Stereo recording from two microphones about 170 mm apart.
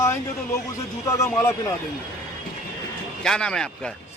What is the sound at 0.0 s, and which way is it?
A man's voice, 15° left (ahead or behind).